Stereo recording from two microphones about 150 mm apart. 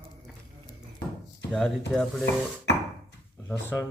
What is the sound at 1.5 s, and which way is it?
Speech, 5° left (ahead or behind).